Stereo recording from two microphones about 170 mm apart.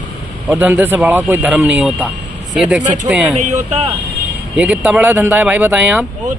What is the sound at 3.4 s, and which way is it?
Speech, 40° right (ahead or behind).